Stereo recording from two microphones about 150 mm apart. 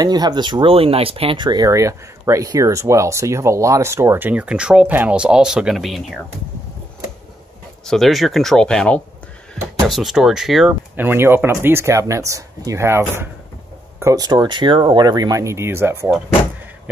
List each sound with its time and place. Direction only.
0.0 s speech: 25° right (ahead or behind); by 6.2 s centre (ahead or behind)
7.8 s speech: centre (ahead or behind)
11.0 s speech: 15° right (ahead or behind)